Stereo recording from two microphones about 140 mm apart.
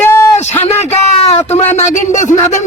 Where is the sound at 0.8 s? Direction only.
50° left (ahead or behind).